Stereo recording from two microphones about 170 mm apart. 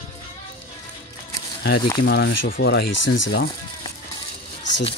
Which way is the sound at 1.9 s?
80° left.